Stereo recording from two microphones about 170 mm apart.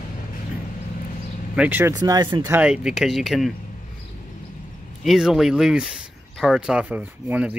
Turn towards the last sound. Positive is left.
turn(degrees=-10)  # may be behind; listen again after turning